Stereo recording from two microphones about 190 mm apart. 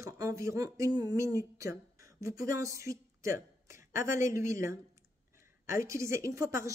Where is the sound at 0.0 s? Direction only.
15° right (ahead or behind).